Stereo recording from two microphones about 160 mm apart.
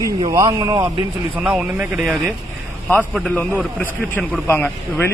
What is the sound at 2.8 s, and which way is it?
Speech, 10° left (ahead or behind).